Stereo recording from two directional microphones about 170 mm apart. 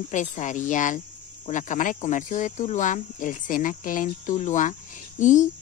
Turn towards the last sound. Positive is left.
turn(degrees=45)  # may be behind; listen again after turning